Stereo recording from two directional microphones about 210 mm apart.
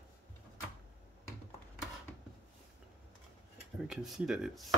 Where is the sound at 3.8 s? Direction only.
Centre (ahead or behind).